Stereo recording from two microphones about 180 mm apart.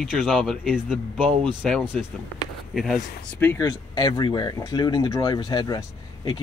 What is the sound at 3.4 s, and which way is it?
Speech, 10° left (ahead or behind).